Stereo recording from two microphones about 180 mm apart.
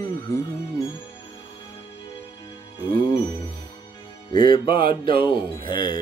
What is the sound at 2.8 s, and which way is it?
Music, 25° left (ahead or behind).